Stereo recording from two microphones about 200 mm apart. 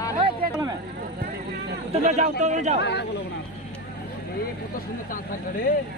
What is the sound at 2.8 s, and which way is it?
Speech, 60° left (ahead or behind).